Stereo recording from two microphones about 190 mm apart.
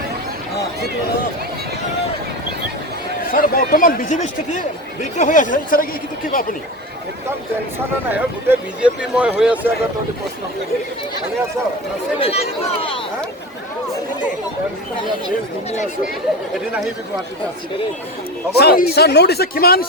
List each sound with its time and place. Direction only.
3.3 s speech: 45° left (ahead or behind)
8.1 s speech: 5° right (ahead or behind)
12.2 s speech: 30° left (ahead or behind)
18.5 s speech: 55° left (ahead or behind)